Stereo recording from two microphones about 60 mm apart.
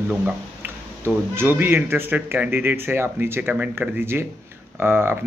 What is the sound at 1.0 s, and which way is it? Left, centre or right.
Speech, right.